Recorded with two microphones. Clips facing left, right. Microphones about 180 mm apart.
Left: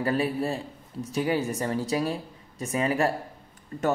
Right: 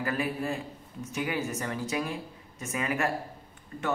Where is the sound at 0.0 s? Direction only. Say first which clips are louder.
Left 5 dB; 30° left (ahead or behind).